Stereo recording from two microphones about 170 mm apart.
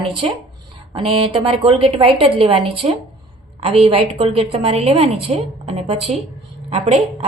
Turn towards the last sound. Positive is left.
turn(degrees=-35)  # may be behind; listen again after turning